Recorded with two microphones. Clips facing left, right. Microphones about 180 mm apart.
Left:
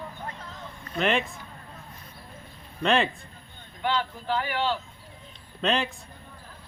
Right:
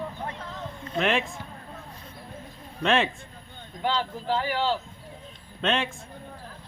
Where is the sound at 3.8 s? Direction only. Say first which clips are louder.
Even; 35° right (ahead or behind).